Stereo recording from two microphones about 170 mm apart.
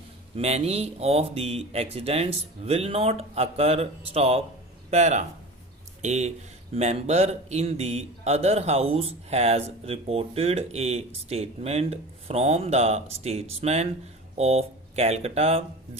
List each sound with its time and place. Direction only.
0.3 s speech: 40° right (ahead or behind)